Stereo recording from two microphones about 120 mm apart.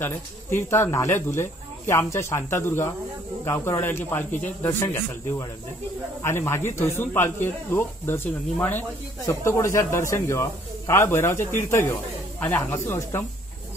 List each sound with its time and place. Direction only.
0.0 s speech: 20° left (ahead or behind)